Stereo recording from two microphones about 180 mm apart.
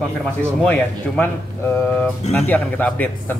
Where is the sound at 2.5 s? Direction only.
10° left (ahead or behind).